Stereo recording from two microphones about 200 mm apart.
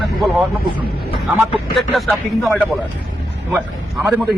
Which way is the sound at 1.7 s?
Centre (ahead or behind).